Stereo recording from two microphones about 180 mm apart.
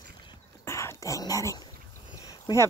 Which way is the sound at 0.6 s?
15° left (ahead or behind).